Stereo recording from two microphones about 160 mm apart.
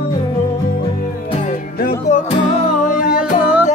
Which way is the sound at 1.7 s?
70° left (ahead or behind).